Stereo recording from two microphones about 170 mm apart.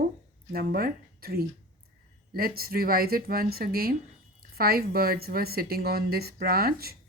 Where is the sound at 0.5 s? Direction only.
60° right (ahead or behind).